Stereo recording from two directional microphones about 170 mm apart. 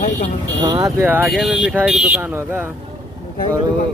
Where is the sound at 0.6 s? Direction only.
20° right (ahead or behind).